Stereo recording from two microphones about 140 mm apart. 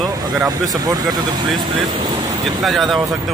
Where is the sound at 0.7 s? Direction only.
25° right (ahead or behind).